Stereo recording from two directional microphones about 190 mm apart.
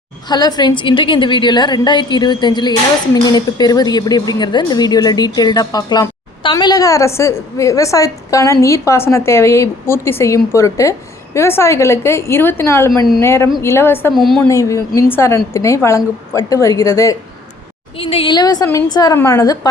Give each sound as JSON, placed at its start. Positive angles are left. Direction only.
{"t": 0.3, "sound": "a woman's voice", "side_deg": 20}
{"t": 14.1, "sound": "a woman's voice", "side_deg": 0}
{"t": 14.5, "sound": "a woman's voice", "side_deg": 15}
{"t": 17.9, "sound": "a woman's voice", "side_deg": 30}